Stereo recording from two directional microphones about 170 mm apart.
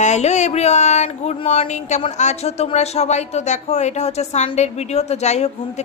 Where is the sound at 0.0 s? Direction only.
45° left (ahead or behind).